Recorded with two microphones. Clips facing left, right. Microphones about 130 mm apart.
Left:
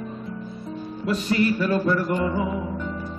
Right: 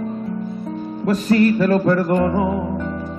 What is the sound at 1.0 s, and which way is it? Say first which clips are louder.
Music: right 6 dB; 45° right (ahead or behind).